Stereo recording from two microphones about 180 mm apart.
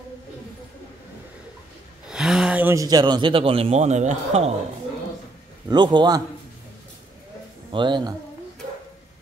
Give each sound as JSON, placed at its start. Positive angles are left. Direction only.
{"t": 2.0, "sound": "speech", "side_deg": -5}
{"t": 5.7, "sound": "a man's voice", "side_deg": -25}
{"t": 7.7, "sound": "a man's voice", "side_deg": -25}